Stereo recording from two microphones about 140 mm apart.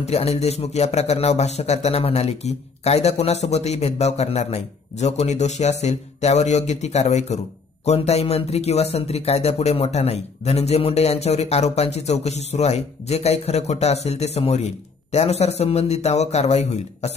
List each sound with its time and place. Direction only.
0.0 s speech: 50° left (ahead or behind)